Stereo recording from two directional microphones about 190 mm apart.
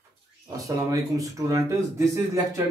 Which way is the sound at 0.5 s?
20° right (ahead or behind).